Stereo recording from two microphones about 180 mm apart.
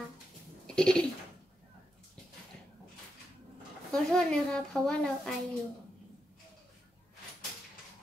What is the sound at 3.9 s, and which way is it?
A woman's voice, 5° left (ahead or behind).